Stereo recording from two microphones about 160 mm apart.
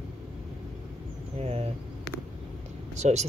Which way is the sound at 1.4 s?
40° right (ahead or behind).